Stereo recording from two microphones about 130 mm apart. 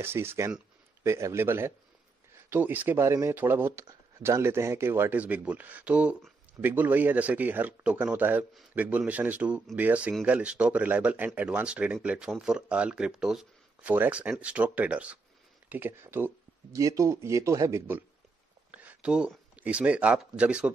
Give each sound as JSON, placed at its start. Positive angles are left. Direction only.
{"t": 0.0, "sound": "speech", "side_deg": -20}